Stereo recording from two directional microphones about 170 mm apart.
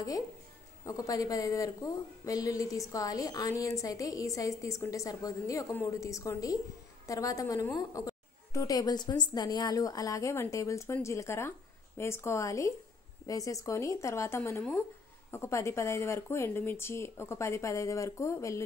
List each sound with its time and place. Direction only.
0.8 s a woman's voice: 20° left (ahead or behind)